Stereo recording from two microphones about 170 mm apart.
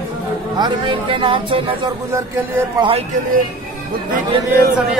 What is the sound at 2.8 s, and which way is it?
Speech, 35° right (ahead or behind).